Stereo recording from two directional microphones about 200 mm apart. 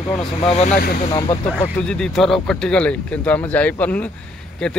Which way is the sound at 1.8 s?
5° left (ahead or behind).